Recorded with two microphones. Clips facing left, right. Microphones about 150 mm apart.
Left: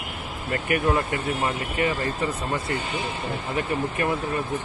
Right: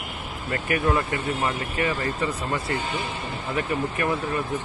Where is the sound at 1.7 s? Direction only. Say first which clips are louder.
Left 2 dB; 15° left (ahead or behind).